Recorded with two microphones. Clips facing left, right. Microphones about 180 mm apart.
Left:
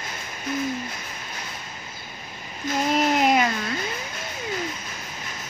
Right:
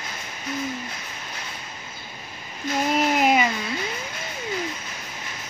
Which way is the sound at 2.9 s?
Centre (ahead or behind).